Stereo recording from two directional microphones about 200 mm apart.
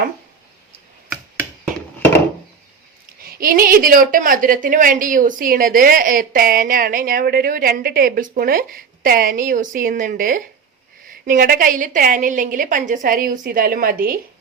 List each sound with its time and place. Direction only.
3.2 s a woman's voice: 45° right (ahead or behind)